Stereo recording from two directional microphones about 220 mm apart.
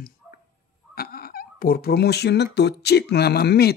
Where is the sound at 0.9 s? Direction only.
45° left (ahead or behind).